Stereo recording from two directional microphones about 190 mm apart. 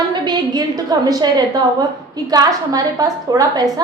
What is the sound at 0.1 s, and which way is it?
A woman's voice, 20° right (ahead or behind).